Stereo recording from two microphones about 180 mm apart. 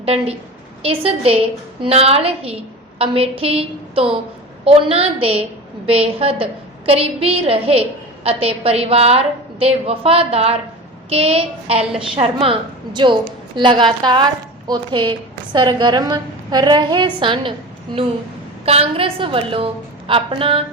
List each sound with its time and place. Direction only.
0.0 s a woman's voice: 35° right (ahead or behind)
18.6 s a woman's voice: 35° right (ahead or behind)